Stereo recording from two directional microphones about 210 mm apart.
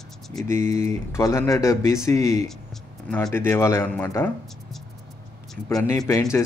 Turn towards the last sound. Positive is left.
turn(degrees=15)  # may be behind; listen again after turning